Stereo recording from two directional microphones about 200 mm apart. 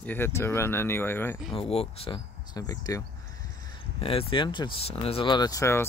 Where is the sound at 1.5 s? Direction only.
30° left (ahead or behind).